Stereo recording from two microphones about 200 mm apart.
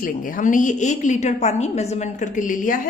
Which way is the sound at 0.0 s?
45° left (ahead or behind).